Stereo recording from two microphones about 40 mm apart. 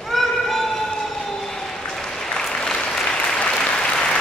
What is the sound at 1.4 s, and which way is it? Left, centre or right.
Applause, centre.